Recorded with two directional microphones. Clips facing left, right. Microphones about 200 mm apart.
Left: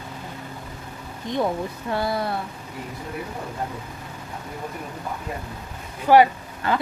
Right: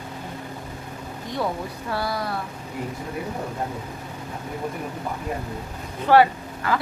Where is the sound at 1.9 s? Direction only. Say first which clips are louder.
Left 2 dB; 25° left (ahead or behind).